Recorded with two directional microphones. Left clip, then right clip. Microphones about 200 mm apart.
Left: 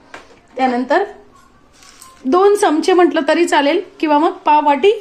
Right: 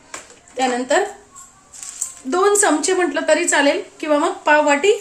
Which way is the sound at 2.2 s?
35° left (ahead or behind).